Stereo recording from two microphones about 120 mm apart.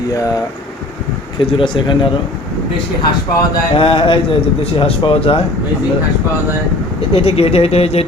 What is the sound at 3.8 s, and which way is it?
Speech, 45° left (ahead or behind).